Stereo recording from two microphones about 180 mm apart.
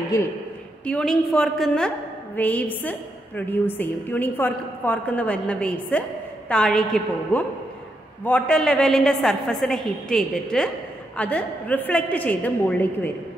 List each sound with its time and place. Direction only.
0.1 s a woman's voice: 20° left (ahead or behind)
0.8 s a woman's voice: 5° left (ahead or behind)